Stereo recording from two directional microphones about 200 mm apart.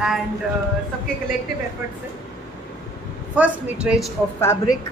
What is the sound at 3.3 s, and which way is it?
Speech, 5° right (ahead or behind).